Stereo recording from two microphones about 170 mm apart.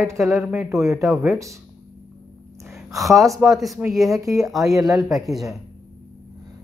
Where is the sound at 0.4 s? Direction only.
5° right (ahead or behind).